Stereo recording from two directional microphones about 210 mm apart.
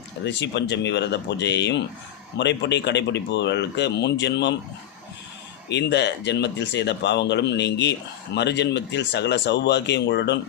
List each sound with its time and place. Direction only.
0.3 s speech: 55° left (ahead or behind)
5.6 s speech: 55° left (ahead or behind)